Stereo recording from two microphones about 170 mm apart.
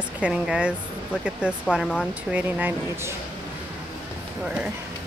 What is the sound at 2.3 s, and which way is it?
Speech, 10° right (ahead or behind).